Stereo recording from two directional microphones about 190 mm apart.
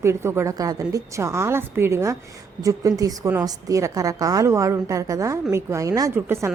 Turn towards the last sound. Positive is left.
turn(degrees=-15)  # may be behind; listen again after turning